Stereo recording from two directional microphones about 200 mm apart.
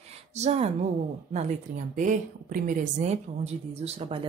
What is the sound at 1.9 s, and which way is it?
A woman's voice, 40° right (ahead or behind).